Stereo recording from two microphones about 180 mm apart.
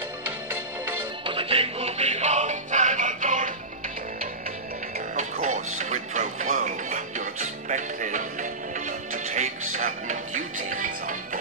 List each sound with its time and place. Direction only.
1.2 s music: 30° right (ahead or behind); by 3.5 s 45° right (ahead or behind)
5.1 s music: 40° right (ahead or behind)